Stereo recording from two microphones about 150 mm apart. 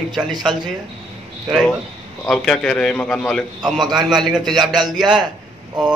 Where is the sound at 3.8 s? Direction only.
30° right (ahead or behind).